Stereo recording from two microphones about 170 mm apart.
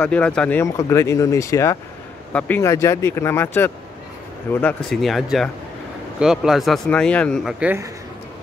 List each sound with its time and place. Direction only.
0.0 s speech: 5° left (ahead or behind)
7.6 s a man's voice: 15° right (ahead or behind)